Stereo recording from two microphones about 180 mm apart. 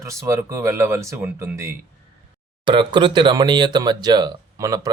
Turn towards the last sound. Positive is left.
turn(degrees=-20)  # may be behind; listen again after turning